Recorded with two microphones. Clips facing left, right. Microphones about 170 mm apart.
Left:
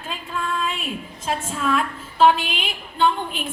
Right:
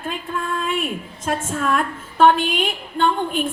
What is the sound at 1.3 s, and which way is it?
A woman's voice, 50° right (ahead or behind).